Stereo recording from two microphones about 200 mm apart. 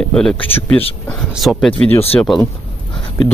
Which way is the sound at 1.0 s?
Centre (ahead or behind).